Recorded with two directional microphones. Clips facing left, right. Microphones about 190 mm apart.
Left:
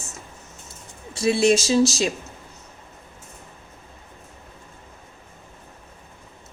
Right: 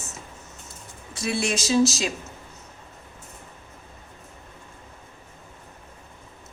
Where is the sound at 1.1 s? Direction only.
25° left (ahead or behind).